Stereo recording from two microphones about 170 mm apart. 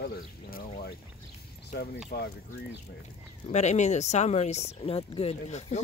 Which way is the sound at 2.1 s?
75° left (ahead or behind).